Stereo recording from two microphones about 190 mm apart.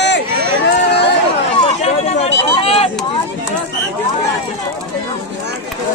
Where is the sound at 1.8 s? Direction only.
35° left (ahead or behind).